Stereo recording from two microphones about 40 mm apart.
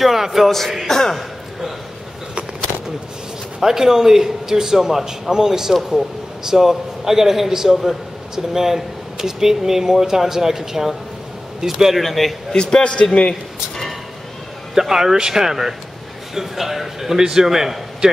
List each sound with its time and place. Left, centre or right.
0.0 s a man's voice: centre
3.6 s a man's voice: centre
12.5 s a man's voice: left
13.3 s a sound: centre
14.7 s speech: centre